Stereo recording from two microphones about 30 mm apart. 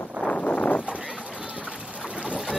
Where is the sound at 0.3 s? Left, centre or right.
Left.